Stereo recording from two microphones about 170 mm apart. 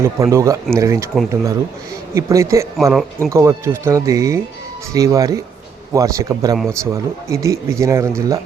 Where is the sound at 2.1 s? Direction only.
15° right (ahead or behind).